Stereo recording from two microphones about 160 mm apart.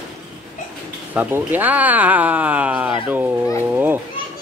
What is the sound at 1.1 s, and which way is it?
Speech, 10° right (ahead or behind).